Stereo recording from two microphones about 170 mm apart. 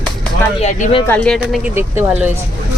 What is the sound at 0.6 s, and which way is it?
Speech, 45° left (ahead or behind).